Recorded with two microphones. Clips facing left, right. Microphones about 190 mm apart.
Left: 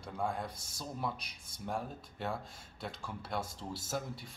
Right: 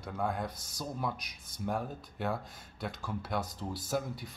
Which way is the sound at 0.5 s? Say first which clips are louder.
Right 1 dB; 25° left (ahead or behind).